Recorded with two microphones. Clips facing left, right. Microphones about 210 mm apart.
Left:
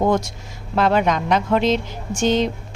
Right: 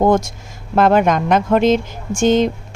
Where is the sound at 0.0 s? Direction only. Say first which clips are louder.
Right 4 dB; 50° right (ahead or behind).